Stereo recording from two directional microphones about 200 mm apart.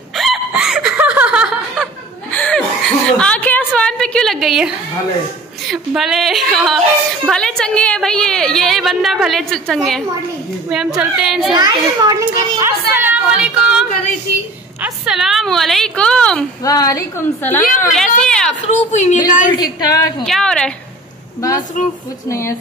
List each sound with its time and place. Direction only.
0.1 s hiccup: centre (ahead or behind)
2.3 s chuckle: 5° left (ahead or behind)
3.1 s a sound: 5° left (ahead or behind)
5.7 s a woman's voice: centre (ahead or behind)
11.5 s a child's voice: 20° right (ahead or behind); by 16.4 s 5° left (ahead or behind)
16.6 s a woman's voice: 15° left (ahead or behind)
18.2 s a sound: 5° left (ahead or behind)
18.7 s a woman's voice: 35° left (ahead or behind)
19.5 s a woman's voice: 20° left (ahead or behind)
20.2 s a woman's voice: 5° left (ahead or behind)
22.3 s a woman's voice: 15° left (ahead or behind)